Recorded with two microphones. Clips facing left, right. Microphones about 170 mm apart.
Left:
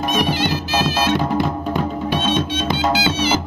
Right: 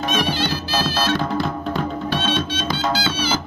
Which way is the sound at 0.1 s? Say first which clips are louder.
Left 3 dB; 15° left (ahead or behind).